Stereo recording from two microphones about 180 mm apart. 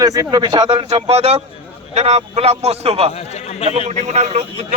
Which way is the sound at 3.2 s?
35° left (ahead or behind).